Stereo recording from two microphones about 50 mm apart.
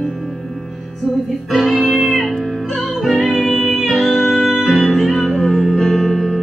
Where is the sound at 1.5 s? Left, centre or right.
Centre.